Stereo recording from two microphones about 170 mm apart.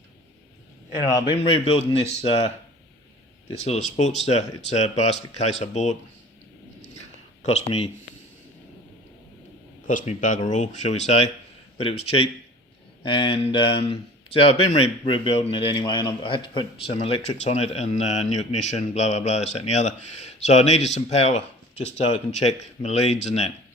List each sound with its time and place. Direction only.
1.5 s speech: 35° left (ahead or behind)
3.6 s speech: 40° left (ahead or behind)
7.4 s speech: 40° left (ahead or behind)
9.8 s speech: 50° left (ahead or behind)